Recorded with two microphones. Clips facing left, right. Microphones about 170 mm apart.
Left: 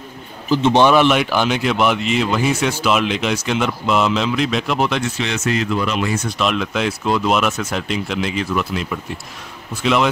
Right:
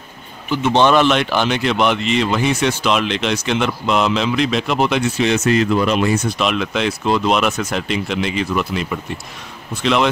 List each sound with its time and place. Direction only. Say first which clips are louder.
0.7 s speech: even; 10° left (ahead or behind)
5.2 s speech: right 5 dB; 50° right (ahead or behind)
6.3 s speech: right 1 dB; centre (ahead or behind)